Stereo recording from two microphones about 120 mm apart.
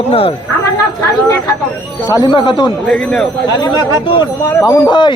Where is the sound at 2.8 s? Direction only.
10° left (ahead or behind).